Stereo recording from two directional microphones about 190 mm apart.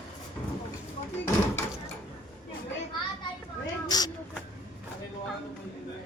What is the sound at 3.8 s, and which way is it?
Speech, 20° left (ahead or behind).